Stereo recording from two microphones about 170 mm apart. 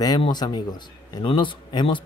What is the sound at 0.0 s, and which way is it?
Speech, 25° left (ahead or behind).